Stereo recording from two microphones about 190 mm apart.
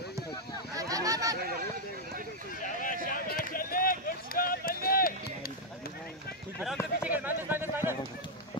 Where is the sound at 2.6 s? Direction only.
45° left (ahead or behind).